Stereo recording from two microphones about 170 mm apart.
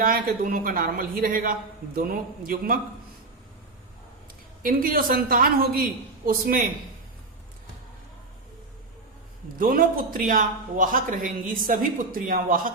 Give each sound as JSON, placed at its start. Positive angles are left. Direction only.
{"t": 0.0, "sound": "a man's voice", "side_deg": -55}
{"t": 4.6, "sound": "a man's voice", "side_deg": -55}
{"t": 9.6, "sound": "a man's voice", "side_deg": -55}